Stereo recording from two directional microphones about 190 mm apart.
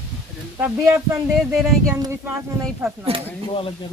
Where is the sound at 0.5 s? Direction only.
15° right (ahead or behind).